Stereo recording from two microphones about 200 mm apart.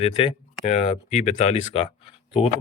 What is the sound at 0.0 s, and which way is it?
Speech, 30° left (ahead or behind).